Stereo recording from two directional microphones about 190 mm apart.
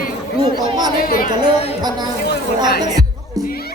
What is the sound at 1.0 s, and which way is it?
Speech, 50° left (ahead or behind).